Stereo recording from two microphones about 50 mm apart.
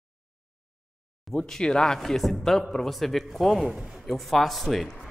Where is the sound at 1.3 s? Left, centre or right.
Centre.